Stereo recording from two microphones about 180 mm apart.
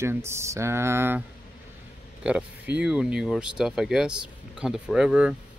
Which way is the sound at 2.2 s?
5° right (ahead or behind).